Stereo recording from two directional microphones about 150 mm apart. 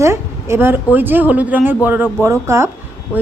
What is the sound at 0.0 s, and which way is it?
A woman's voice, 20° right (ahead or behind).